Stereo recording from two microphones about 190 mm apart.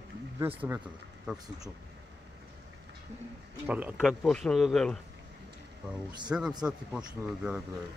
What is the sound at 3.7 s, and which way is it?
Speech, 5° right (ahead or behind).